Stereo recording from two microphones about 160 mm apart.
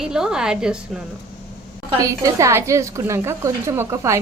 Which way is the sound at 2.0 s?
20° right (ahead or behind).